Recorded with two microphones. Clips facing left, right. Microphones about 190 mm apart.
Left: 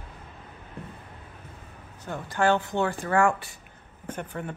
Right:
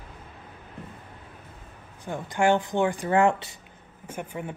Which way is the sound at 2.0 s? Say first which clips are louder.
Right 1 dB; 15° right (ahead or behind).